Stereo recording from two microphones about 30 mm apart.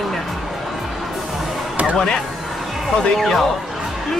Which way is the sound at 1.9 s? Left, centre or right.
Centre.